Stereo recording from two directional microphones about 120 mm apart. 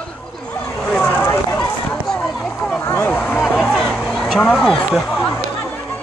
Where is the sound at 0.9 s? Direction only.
15° left (ahead or behind).